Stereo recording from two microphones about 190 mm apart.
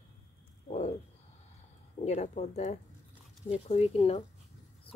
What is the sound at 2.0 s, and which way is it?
Speech, 35° left (ahead or behind).